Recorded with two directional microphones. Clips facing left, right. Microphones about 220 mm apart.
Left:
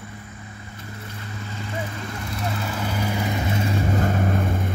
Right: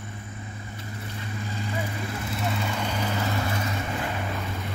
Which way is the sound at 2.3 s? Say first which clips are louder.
Left 1 dB; centre (ahead or behind).